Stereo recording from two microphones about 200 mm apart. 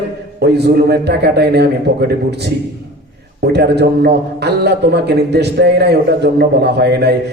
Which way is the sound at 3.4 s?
55° right (ahead or behind).